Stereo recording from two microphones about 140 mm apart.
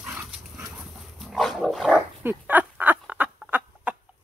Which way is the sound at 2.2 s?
10° right (ahead or behind).